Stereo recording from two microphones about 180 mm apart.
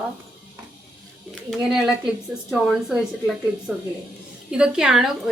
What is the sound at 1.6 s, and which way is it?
A woman's voice, 5° right (ahead or behind).